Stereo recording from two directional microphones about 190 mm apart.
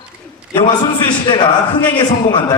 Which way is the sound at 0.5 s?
25° left (ahead or behind).